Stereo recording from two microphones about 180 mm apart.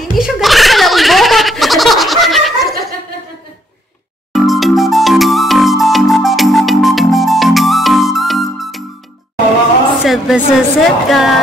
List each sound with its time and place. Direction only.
0.0 s a sound: centre (ahead or behind)
4.3 s music: centre (ahead or behind)
10.0 s speech: centre (ahead or behind)